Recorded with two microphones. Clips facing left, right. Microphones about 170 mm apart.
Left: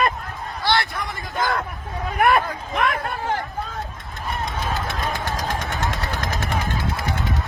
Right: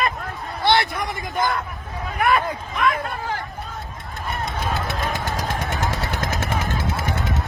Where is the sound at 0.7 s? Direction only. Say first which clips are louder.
Right 3 dB; 20° right (ahead or behind).